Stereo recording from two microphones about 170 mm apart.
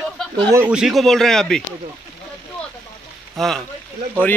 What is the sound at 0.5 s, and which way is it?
A man's voice, 10° right (ahead or behind).